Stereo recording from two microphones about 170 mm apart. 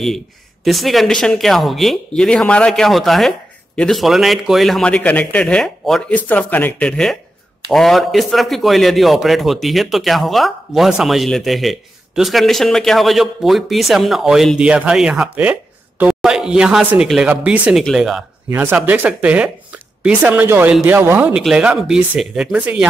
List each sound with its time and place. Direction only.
0.7 s speech: centre (ahead or behind)